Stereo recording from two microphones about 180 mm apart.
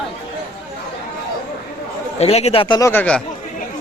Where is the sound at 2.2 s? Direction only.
35° left (ahead or behind).